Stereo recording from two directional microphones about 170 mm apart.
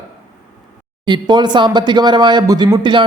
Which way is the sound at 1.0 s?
25° right (ahead or behind).